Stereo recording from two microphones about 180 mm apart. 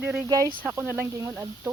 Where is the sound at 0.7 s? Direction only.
10° right (ahead or behind).